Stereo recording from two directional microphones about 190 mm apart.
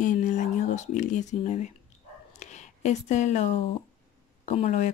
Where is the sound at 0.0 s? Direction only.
40° left (ahead or behind).